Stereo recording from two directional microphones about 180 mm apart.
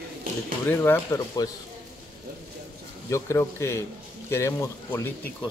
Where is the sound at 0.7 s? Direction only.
10° left (ahead or behind).